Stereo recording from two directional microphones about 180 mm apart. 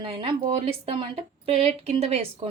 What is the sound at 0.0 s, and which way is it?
A woman's voice, 30° right (ahead or behind).